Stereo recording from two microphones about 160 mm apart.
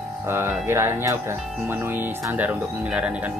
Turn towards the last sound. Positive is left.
turn(degrees=-5)  # may be behind; listen again after turning